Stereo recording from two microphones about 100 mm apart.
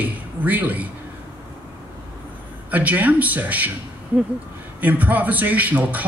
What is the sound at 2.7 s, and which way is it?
A man's voice, 15° right (ahead or behind).